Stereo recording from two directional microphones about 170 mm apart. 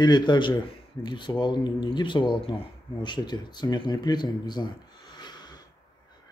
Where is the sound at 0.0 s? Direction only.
25° left (ahead or behind).